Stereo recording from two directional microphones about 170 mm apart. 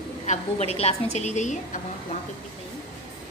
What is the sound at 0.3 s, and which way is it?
A woman's voice, 40° left (ahead or behind).